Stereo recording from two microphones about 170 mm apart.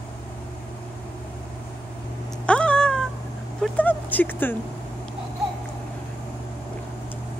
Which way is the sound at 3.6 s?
10° left (ahead or behind).